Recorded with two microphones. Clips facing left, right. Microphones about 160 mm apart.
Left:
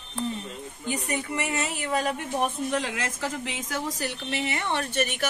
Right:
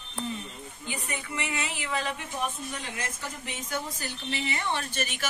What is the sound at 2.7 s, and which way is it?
A woman's voice, 90° left.